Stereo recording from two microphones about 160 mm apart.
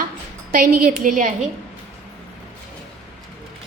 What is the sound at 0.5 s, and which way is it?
Speech, 60° right (ahead or behind).